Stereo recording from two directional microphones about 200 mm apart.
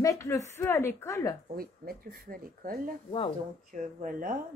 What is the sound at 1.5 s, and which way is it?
Speech, 50° right (ahead or behind).